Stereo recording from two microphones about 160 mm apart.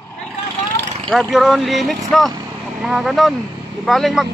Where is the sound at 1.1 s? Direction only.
Centre (ahead or behind).